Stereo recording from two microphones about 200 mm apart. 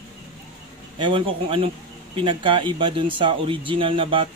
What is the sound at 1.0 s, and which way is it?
Speech, 25° right (ahead or behind).